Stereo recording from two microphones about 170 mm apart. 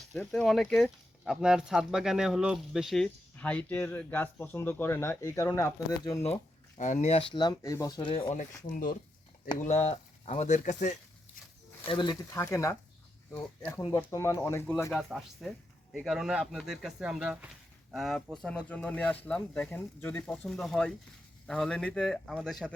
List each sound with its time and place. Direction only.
0.1 s speech: 5° left (ahead or behind)
6.7 s speech: 45° left (ahead or behind); by 8.3 s 30° left (ahead or behind)
8.3 s speech: 45° left (ahead or behind)
11.9 s speech: 25° left (ahead or behind)
14.8 s speech: centre (ahead or behind)